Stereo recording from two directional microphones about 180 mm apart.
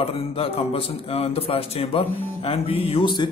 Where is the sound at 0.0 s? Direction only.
35° left (ahead or behind).